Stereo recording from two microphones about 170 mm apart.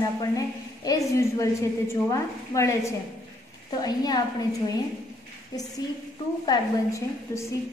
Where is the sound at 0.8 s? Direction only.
20° left (ahead or behind).